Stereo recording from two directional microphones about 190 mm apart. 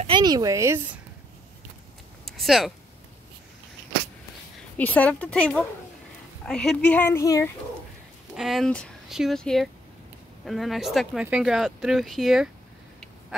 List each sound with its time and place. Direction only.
0.0 s speech: 25° right (ahead or behind)
2.2 s speech: centre (ahead or behind)
4.7 s speech: 10° left (ahead or behind)
8.4 s speech: centre (ahead or behind)